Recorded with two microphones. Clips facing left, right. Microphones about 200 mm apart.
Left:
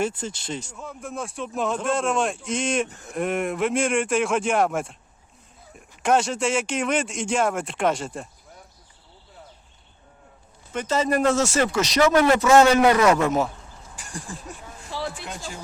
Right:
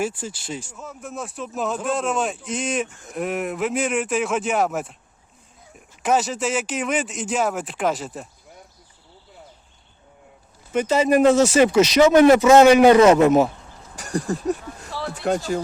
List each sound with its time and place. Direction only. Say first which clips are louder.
0.0 s speech: even; 5° right (ahead or behind)
10.8 s speech: right 5 dB; centre (ahead or behind)
11.0 s a man's voice: right 6 dB; 15° right (ahead or behind)
14.1 s a man's voice: right 14 dB; 65° right (ahead or behind)